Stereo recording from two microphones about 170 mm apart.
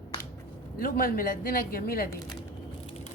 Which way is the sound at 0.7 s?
55° left (ahead or behind).